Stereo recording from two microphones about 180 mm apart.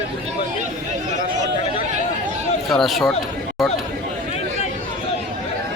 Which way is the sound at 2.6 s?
Centre (ahead or behind).